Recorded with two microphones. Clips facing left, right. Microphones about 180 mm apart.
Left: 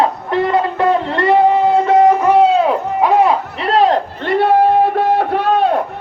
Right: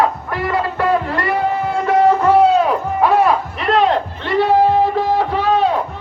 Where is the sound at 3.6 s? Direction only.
35° left (ahead or behind).